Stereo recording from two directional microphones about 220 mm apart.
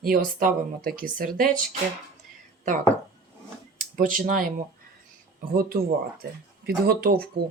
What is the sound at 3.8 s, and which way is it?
Speech, 40° right (ahead or behind).